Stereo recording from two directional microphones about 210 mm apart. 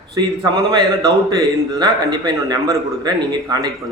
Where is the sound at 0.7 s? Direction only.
20° right (ahead or behind).